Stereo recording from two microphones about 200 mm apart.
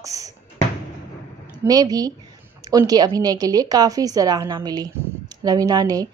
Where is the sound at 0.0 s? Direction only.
15° right (ahead or behind).